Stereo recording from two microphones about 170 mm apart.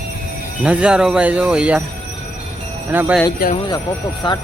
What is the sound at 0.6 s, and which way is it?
Speech, 5° right (ahead or behind).